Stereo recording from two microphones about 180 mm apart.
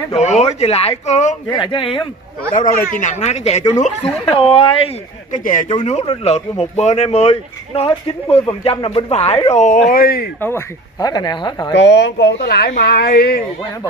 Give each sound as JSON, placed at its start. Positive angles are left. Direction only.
{"t": 0.1, "sound": "speech", "side_deg": 35}
{"t": 1.5, "sound": "speech", "side_deg": 25}
{"t": 3.0, "sound": "speech", "side_deg": 40}
{"t": 5.4, "sound": "speech", "side_deg": 45}
{"t": 5.9, "sound": "speech", "side_deg": 35}
{"t": 9.8, "sound": "speech", "side_deg": 55}
{"t": 10.4, "sound": "speech", "side_deg": 15}
{"t": 11.7, "sound": "speech", "side_deg": 75}